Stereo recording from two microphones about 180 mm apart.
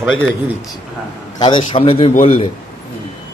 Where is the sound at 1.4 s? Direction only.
30° left (ahead or behind).